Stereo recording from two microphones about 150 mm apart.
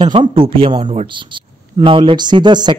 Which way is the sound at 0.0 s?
35° right (ahead or behind).